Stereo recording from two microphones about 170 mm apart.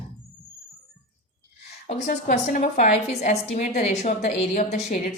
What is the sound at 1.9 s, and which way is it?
A woman's voice, 45° left (ahead or behind).